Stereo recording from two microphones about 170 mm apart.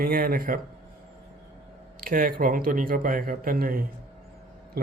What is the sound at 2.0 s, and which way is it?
Speech, 55° right (ahead or behind).